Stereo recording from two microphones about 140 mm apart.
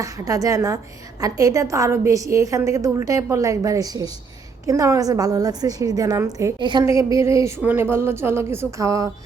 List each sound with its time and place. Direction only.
0.0 s a woman's voice: 25° right (ahead or behind)
6.8 s a woman's voice: 20° right (ahead or behind)